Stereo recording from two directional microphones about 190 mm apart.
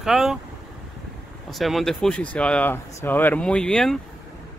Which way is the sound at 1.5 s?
Centre (ahead or behind).